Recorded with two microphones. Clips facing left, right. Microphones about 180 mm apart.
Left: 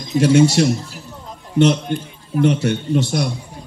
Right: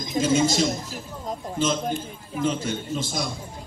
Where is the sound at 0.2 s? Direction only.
70° left (ahead or behind).